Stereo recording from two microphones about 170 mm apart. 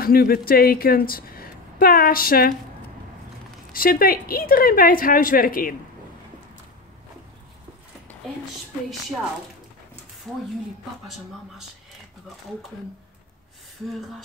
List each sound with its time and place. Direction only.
0.0 s a woman's voice: 60° left (ahead or behind)
3.7 s a woman's voice: 60° left (ahead or behind)